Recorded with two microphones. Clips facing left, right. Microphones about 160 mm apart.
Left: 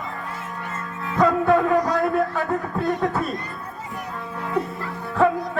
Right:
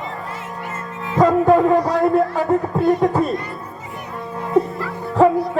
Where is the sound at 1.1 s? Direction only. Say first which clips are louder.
Right 5 dB; 30° right (ahead or behind).